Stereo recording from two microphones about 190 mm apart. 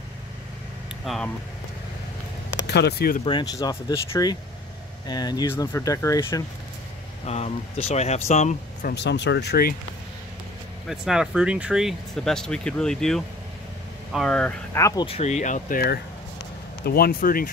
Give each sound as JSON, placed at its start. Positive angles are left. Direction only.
{"t": 1.0, "sound": "speech", "side_deg": 0}
{"t": 2.6, "sound": "speech", "side_deg": 60}
{"t": 3.3, "sound": "speech", "side_deg": 25}
{"t": 7.2, "sound": "speech", "side_deg": 35}
{"t": 8.9, "sound": "speech", "side_deg": 65}
{"t": 10.9, "sound": "speech", "side_deg": -5}
{"t": 15.0, "sound": "speech", "side_deg": 35}